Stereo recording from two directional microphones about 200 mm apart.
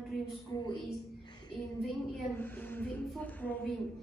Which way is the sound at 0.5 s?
15° left (ahead or behind).